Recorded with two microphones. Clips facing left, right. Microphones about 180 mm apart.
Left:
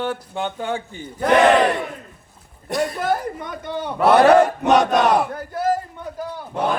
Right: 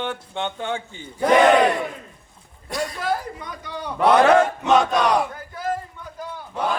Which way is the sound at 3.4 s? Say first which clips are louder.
Left 5 dB; 50° left (ahead or behind).